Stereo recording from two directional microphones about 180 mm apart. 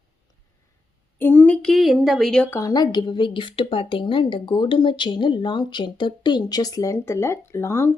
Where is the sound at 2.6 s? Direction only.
20° left (ahead or behind).